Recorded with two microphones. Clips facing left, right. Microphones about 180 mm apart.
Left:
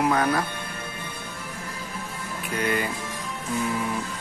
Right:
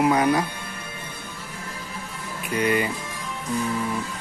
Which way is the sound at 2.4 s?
5° right (ahead or behind).